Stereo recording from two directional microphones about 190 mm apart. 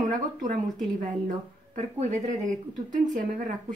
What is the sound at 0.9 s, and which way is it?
Speech, 45° right (ahead or behind).